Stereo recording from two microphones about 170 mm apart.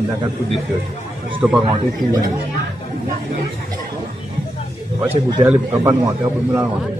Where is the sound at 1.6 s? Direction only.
30° right (ahead or behind).